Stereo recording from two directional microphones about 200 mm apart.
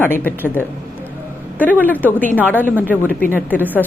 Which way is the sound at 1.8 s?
10° left (ahead or behind).